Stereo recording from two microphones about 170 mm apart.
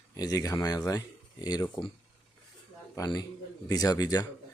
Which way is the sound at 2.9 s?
20° left (ahead or behind).